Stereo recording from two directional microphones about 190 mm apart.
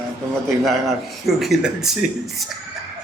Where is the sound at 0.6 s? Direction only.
Centre (ahead or behind).